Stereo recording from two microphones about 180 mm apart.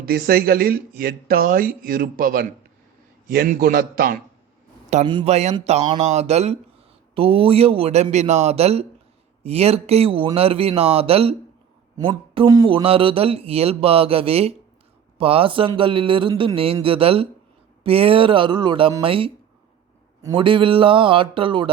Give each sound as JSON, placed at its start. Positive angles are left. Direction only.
{"t": 0.0, "sound": "speech", "side_deg": -55}
{"t": 5.0, "sound": "a man's voice", "side_deg": -25}
{"t": 5.3, "sound": "a man's voice", "side_deg": -40}